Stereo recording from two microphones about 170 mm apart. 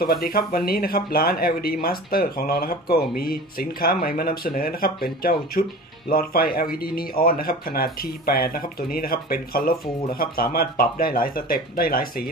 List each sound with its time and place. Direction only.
0.0 s speech: 60° left (ahead or behind)